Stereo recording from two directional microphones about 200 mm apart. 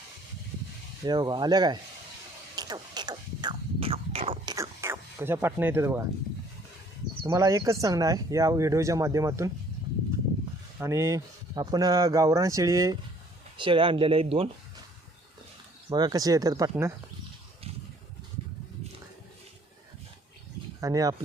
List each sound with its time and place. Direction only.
1.0 s speech: 20° right (ahead or behind)
2.6 s a sound: 20° right (ahead or behind)
4.5 s a sound: 15° right (ahead or behind)
7.2 s speech: 20° right (ahead or behind)
10.8 s speech: 15° right (ahead or behind); by 14.5 s 30° right (ahead or behind)
15.9 s speech: 20° right (ahead or behind)
20.8 s speech: 15° right (ahead or behind)